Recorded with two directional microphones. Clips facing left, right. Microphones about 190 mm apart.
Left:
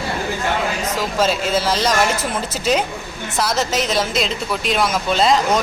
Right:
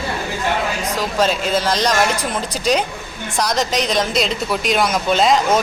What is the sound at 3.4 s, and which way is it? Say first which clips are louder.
Speech: right 1 dB; 5° left (ahead or behind).